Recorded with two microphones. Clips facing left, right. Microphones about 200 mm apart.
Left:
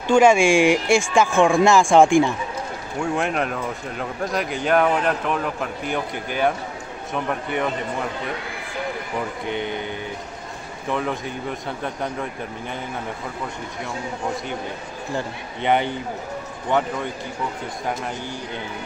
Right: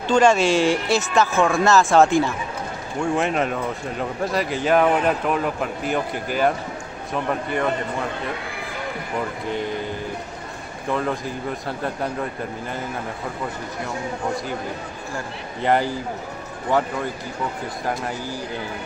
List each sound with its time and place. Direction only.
0.1 s speech: 10° left (ahead or behind)
3.0 s speech: centre (ahead or behind)
9.5 s speech: centre (ahead or behind)
10.9 s speech: centre (ahead or behind)
15.6 s speech: centre (ahead or behind)